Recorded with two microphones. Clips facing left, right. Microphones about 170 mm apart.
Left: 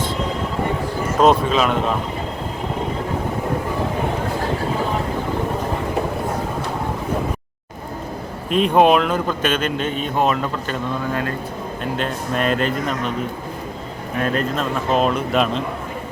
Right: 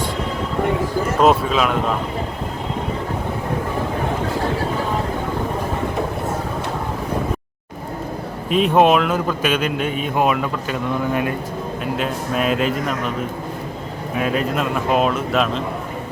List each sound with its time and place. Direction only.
1.2 s speech: 5° right (ahead or behind)
8.4 s a man's voice: centre (ahead or behind)
11.1 s a man's voice: 15° right (ahead or behind)
11.9 s speech: 5° right (ahead or behind)
14.2 s speech: 5° right (ahead or behind)